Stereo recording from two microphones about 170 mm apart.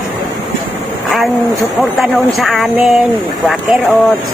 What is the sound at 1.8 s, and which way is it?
Speech, centre (ahead or behind).